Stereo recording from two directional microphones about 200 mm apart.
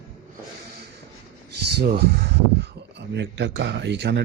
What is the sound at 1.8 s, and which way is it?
Speech, 55° right (ahead or behind).